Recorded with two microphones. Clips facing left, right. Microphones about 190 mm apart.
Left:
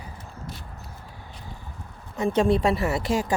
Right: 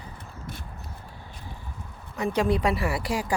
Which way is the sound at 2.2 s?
25° left (ahead or behind).